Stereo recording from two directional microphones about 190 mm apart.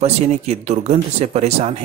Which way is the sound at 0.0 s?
35° right (ahead or behind).